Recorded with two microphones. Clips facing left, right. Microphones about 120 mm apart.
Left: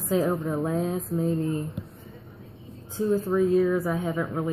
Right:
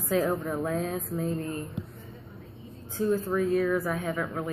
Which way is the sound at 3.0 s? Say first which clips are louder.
Left 3 dB; 20° left (ahead or behind).